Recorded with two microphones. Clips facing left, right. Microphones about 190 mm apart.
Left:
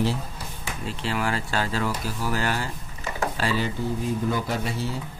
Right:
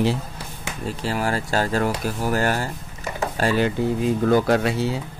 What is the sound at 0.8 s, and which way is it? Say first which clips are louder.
Speech: right 3 dB; 40° right (ahead or behind).